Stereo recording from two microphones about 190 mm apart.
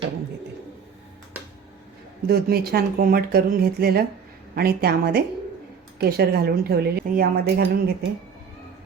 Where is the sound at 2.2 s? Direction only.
55° right (ahead or behind).